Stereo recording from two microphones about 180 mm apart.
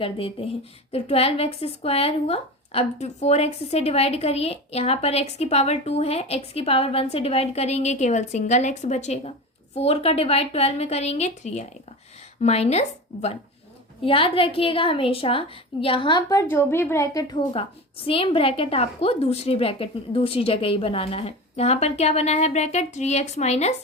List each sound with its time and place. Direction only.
0.0 s speech: 30° left (ahead or behind)
14.0 s speech: 30° left (ahead or behind)
16.4 s a woman's voice: 15° left (ahead or behind)
17.5 s speech: 30° left (ahead or behind)